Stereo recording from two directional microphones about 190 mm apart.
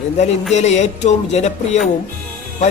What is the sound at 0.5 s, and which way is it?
Speech, 35° left (ahead or behind).